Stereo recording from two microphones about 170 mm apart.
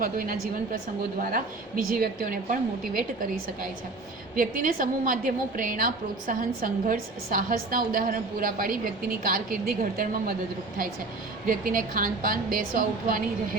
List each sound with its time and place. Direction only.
0.0 s a woman's voice: 55° right (ahead or behind)
11.4 s a woman's voice: 55° right (ahead or behind)